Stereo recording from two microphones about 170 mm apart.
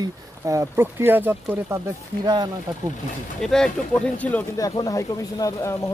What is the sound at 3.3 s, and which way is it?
Speech, 5° left (ahead or behind).